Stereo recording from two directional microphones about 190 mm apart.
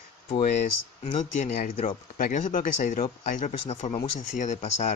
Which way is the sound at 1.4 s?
40° left (ahead or behind).